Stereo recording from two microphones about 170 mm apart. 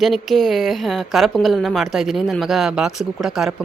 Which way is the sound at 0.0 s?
Centre (ahead or behind).